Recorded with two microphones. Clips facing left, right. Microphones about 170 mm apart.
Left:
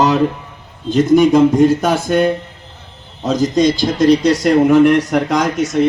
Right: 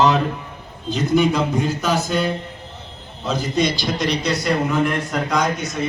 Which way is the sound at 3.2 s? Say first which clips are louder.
Left 7 dB; 40° left (ahead or behind).